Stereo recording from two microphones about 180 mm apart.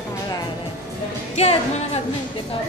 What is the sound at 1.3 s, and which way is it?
Speech, 35° left (ahead or behind).